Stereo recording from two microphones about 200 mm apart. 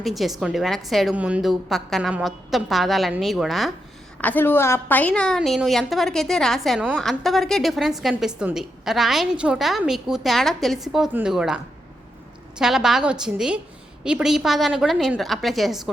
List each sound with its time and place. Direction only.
0.0 s a woman's voice: centre (ahead or behind)